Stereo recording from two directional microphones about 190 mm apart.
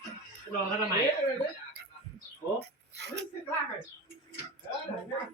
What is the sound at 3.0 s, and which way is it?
Coin, 65° right (ahead or behind).